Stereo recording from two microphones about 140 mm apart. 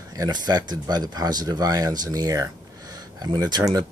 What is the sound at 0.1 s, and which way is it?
Speech, 30° right (ahead or behind).